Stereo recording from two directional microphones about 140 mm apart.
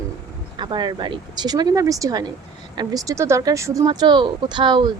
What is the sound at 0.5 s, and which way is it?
Speech, 35° right (ahead or behind).